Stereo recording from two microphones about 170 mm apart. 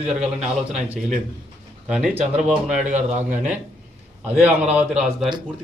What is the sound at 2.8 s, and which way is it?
Speech, 45° right (ahead or behind).